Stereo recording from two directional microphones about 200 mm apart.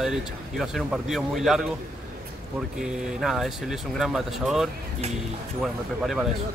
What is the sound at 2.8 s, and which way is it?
Speech, centre (ahead or behind).